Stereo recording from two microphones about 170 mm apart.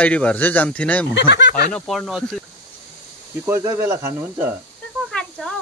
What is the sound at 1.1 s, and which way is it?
Speech, 90° left.